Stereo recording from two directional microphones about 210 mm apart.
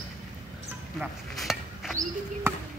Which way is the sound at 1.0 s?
Centre (ahead or behind).